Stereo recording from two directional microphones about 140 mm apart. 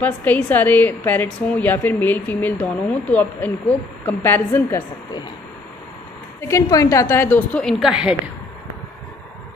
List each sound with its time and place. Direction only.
0.0 s a woman's voice: 10° left (ahead or behind)
6.4 s a woman's voice: 25° left (ahead or behind)
7.8 s a woman's voice: 5° right (ahead or behind)